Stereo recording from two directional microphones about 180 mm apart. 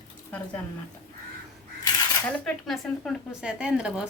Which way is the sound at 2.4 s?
Centre (ahead or behind).